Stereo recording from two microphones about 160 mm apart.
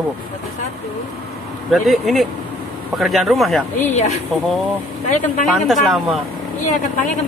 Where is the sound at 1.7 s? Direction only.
Centre (ahead or behind).